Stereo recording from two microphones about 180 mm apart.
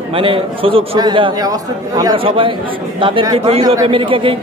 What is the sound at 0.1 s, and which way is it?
Speech, 30° right (ahead or behind).